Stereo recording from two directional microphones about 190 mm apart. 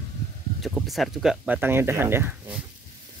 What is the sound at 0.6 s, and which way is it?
Speech, centre (ahead or behind).